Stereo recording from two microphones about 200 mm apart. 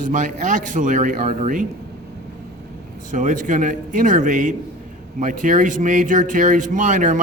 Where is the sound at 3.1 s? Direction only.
40° right (ahead or behind).